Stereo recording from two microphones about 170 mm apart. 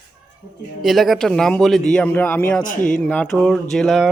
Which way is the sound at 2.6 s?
50° left (ahead or behind).